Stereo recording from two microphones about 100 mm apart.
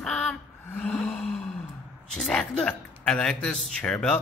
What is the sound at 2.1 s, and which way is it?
Speech, 5° left (ahead or behind).